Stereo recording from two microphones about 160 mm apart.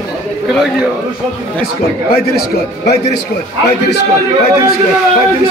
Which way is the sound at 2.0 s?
75° left (ahead or behind).